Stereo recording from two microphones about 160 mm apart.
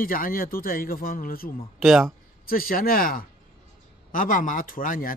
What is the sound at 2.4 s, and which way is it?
Speech, 65° left (ahead or behind).